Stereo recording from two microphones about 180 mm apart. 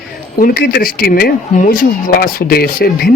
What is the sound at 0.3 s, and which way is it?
Speech, 55° left (ahead or behind).